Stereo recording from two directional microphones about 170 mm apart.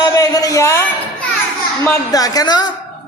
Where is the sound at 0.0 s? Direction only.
20° left (ahead or behind).